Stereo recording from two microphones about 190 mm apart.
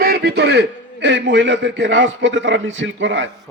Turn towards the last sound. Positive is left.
turn(degrees=-75)  # may be behind; listen again after turning